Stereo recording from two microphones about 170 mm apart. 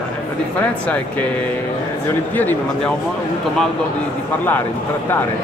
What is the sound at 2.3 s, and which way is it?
Speech, 10° left (ahead or behind).